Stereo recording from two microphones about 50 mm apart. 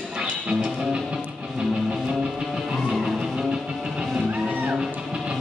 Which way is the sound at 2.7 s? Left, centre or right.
Centre.